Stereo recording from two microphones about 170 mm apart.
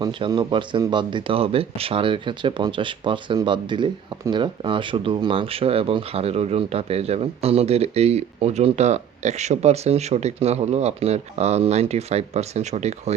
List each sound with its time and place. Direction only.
0.0 s speech: 25° right (ahead or behind)